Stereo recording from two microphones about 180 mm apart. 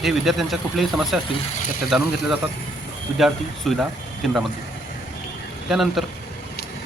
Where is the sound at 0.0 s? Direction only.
Centre (ahead or behind).